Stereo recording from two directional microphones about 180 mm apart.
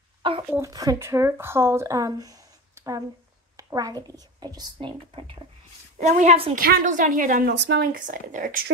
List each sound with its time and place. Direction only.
0.2 s a sound: 30° right (ahead or behind)
0.5 s a woman's voice: 15° right (ahead or behind)
5.9 s a child's voice: 40° right (ahead or behind)
6.5 s speech: 50° right (ahead or behind)
7.5 s speech: 70° right (ahead or behind); by 8.6 s 50° right (ahead or behind)